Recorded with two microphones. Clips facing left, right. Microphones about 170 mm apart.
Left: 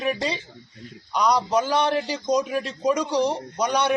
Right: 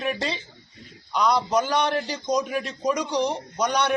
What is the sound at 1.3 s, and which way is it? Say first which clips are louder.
A man's voice: left 2 dB; 10° left (ahead or behind).